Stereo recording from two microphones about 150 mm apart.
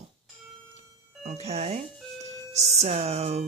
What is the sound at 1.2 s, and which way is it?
Speech, 45° right (ahead or behind).